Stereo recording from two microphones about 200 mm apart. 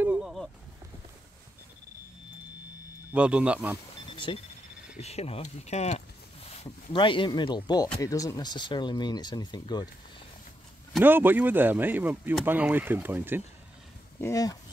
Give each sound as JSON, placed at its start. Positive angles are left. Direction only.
{"t": 0.0, "sound": "a sound", "side_deg": -5}
{"t": 3.1, "sound": "speech", "side_deg": -5}
{"t": 5.0, "sound": "speech", "side_deg": 30}
{"t": 10.9, "sound": "speech", "side_deg": -10}
{"t": 14.2, "sound": "speech", "side_deg": 15}